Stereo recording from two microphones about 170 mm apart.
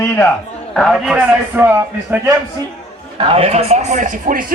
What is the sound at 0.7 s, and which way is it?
A man's voice, centre (ahead or behind).